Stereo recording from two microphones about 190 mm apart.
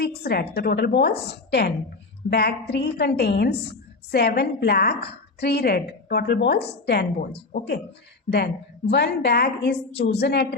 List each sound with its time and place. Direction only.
0.0 s a woman's voice: 55° left (ahead or behind)
8.9 s a woman's voice: 60° left (ahead or behind)